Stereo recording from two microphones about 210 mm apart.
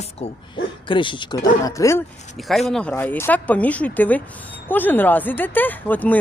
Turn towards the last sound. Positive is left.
turn(degrees=10)  # may be behind; listen again after turning